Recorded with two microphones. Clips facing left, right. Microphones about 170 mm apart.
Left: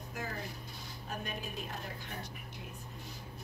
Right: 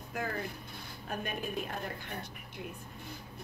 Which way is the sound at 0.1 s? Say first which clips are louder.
Right 5 dB; 55° right (ahead or behind).